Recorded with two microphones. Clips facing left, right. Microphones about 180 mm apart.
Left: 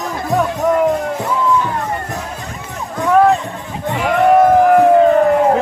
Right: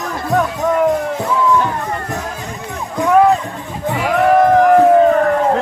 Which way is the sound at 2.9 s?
5° right (ahead or behind).